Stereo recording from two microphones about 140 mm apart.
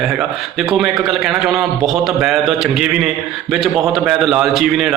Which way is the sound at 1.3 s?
Centre (ahead or behind).